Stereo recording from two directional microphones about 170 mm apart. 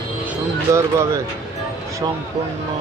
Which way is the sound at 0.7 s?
15° right (ahead or behind).